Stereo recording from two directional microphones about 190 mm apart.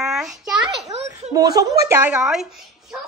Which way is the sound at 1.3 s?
20° right (ahead or behind).